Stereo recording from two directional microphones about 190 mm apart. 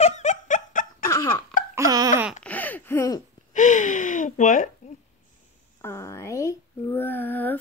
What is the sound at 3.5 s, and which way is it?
Speech, 40° left (ahead or behind).